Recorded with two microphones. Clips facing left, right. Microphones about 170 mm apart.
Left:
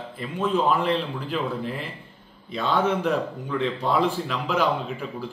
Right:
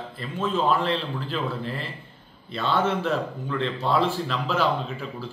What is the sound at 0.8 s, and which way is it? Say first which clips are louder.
A man's voice: left 2 dB; 10° left (ahead or behind).